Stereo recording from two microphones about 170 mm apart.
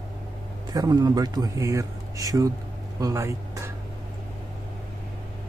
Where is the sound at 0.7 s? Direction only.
25° right (ahead or behind).